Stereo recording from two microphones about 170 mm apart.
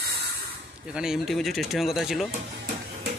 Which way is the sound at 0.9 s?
5° right (ahead or behind).